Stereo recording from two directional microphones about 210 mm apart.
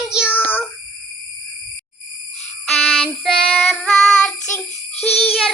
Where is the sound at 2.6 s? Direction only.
Centre (ahead or behind).